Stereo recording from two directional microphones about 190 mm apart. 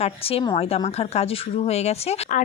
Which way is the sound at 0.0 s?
30° left (ahead or behind).